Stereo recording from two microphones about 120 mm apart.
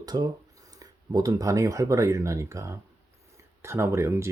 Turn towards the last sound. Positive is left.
turn(degrees=-25)  # may be behind; listen again after turning